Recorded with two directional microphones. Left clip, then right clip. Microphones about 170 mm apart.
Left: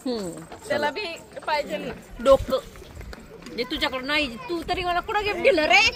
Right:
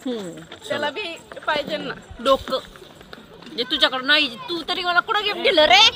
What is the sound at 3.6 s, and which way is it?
Speech, 20° right (ahead or behind).